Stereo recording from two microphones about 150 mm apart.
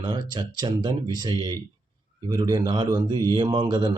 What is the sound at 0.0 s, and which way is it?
Speech, 30° right (ahead or behind).